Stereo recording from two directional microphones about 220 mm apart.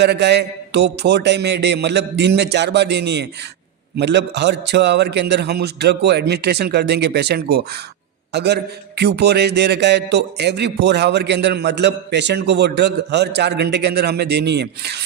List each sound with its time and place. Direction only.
0.0 s a man's voice: 50° right (ahead or behind)